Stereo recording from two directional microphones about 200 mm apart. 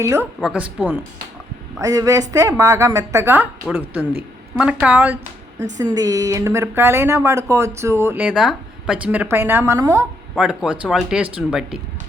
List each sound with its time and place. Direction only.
0.0 s speech: 15° right (ahead or behind)
0.3 s a woman's voice: 5° right (ahead or behind)